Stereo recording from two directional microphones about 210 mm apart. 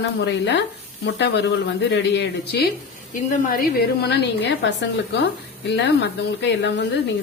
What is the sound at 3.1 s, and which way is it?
A woman's voice, 40° left (ahead or behind).